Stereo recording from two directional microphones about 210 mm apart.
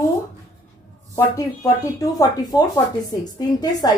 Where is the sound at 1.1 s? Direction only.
15° left (ahead or behind).